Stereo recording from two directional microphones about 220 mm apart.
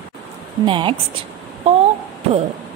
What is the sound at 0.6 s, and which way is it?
A woman's voice, 20° right (ahead or behind).